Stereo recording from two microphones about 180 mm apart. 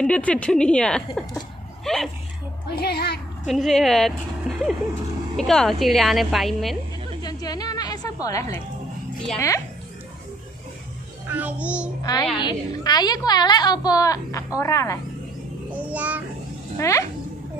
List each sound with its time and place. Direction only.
0.0 s a woman's voice: 5° left (ahead or behind)
2.8 s speech: 60° left (ahead or behind)
3.4 s a woman's voice: centre (ahead or behind)
7.2 s a sound: 20° left (ahead or behind)
11.2 s music: 10° right (ahead or behind)
12.0 s a woman's voice: 20° left (ahead or behind)
15.7 s child singing: 10° right (ahead or behind)
16.7 s speech: 15° left (ahead or behind)